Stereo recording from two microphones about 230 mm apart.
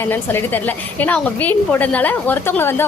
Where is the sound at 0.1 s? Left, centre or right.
Centre.